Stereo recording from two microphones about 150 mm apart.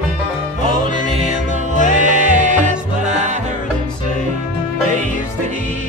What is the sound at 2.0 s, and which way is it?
Music, 55° right (ahead or behind).